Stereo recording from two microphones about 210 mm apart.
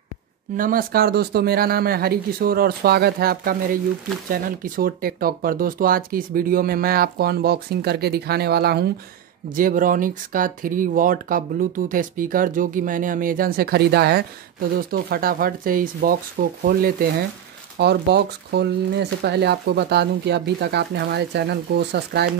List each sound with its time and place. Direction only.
0.6 s speech: 40° right (ahead or behind)